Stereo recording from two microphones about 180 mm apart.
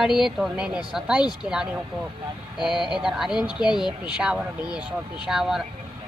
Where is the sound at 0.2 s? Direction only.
Centre (ahead or behind).